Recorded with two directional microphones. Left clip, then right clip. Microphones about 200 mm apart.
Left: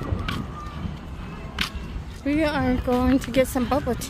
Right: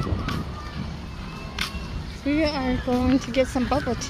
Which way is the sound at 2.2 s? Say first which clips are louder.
Left 1 dB; 25° left (ahead or behind).